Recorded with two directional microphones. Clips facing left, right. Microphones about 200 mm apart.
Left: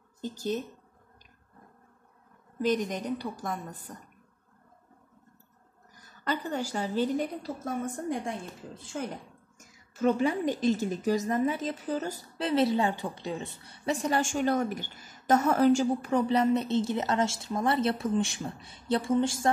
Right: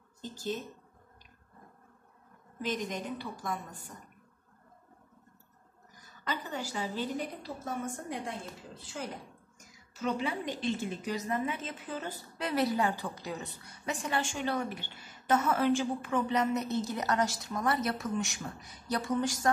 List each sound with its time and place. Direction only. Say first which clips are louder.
0.2 s a woman's voice: left 5 dB; 45° left (ahead or behind)
2.6 s a woman's voice: left 7 dB; 45° left (ahead or behind)
6.2 s a woman's voice: left 6 dB; 45° left (ahead or behind)
9.0 s a woman's voice: left 5 dB; 45° left (ahead or behind)
12.4 s a woman's voice: left 4 dB; 25° left (ahead or behind)